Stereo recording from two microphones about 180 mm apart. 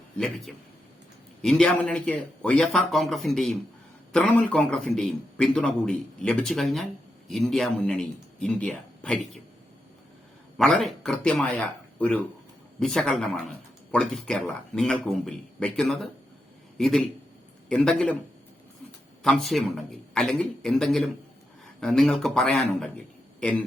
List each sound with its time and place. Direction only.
0.2 s a man's voice: centre (ahead or behind)
10.6 s a man's voice: centre (ahead or behind)
19.2 s a man's voice: centre (ahead or behind)